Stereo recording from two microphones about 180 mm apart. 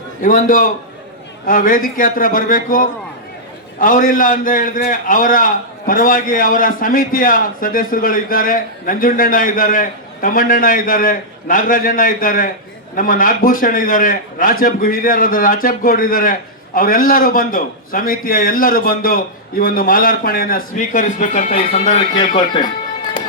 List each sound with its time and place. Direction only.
0.2 s a man's voice: 50° left (ahead or behind)